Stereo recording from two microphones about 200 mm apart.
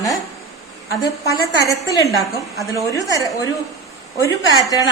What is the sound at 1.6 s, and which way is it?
A woman's voice, 15° left (ahead or behind).